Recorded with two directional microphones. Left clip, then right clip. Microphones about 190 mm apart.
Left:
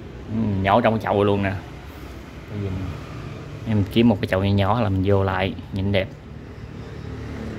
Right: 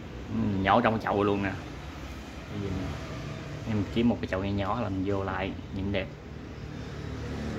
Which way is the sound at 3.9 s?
40° left (ahead or behind).